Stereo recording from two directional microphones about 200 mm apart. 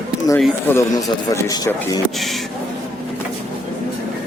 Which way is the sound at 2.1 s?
Centre (ahead or behind).